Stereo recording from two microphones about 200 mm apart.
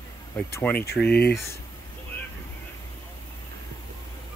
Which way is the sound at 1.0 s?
55° left (ahead or behind).